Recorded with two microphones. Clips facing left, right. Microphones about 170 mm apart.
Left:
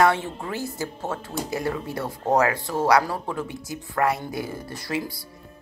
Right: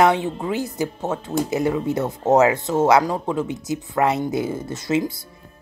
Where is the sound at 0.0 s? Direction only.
20° right (ahead or behind).